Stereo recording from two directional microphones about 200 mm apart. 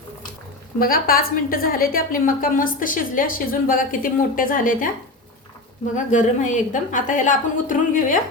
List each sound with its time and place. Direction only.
0.8 s a woman's voice: 45° left (ahead or behind)
6.1 s a woman's voice: 40° left (ahead or behind)